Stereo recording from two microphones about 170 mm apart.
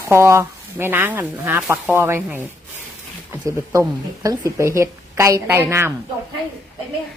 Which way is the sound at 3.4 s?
20° right (ahead or behind).